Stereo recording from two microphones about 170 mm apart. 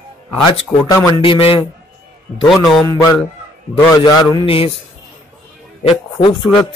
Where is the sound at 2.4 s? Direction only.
Centre (ahead or behind).